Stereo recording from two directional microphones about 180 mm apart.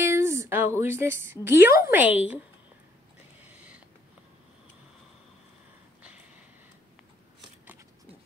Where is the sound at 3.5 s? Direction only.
5° right (ahead or behind).